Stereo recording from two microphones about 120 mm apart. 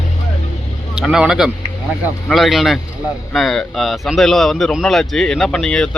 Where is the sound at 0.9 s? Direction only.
5° right (ahead or behind).